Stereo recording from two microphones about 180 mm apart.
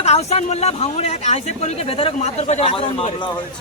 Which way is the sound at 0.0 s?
35° left (ahead or behind).